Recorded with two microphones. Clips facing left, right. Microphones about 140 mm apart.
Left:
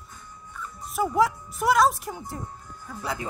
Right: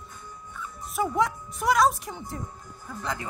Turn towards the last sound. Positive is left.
turn(degrees=0)  # may be behind; listen again after turning